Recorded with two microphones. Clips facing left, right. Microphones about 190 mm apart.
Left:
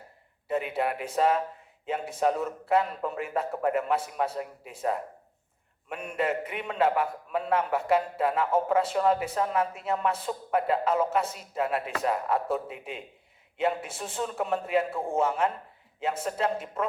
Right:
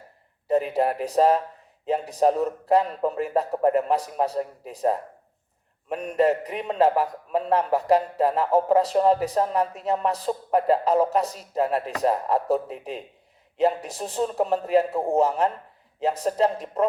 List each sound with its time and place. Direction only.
0.4 s a man's voice: 35° right (ahead or behind)